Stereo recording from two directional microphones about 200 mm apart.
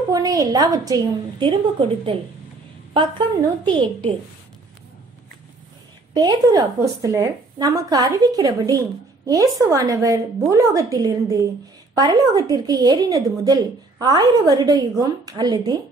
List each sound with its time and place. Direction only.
0.1 s speech: 15° right (ahead or behind)
3.6 s speech: 25° right (ahead or behind)
6.1 s a woman's voice: 20° right (ahead or behind)